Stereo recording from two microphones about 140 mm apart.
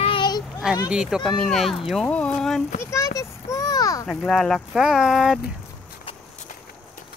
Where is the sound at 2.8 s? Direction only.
20° left (ahead or behind).